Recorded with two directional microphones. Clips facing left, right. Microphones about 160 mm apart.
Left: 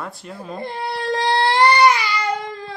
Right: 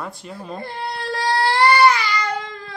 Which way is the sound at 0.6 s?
20° left (ahead or behind).